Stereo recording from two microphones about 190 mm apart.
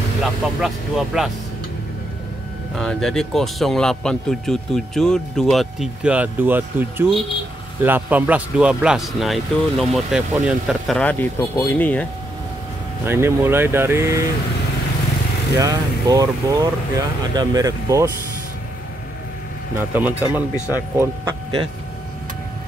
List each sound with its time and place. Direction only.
0.2 s speech: centre (ahead or behind)
2.7 s speech: 5° left (ahead or behind)
13.0 s speech: 10° right (ahead or behind)
15.5 s speech: 15° right (ahead or behind)
19.8 s speech: 10° right (ahead or behind)
20.5 s speech: 15° left (ahead or behind)
21.0 s speech: 25° right (ahead or behind)